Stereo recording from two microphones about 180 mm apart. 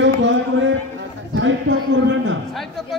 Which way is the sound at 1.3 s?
85° right.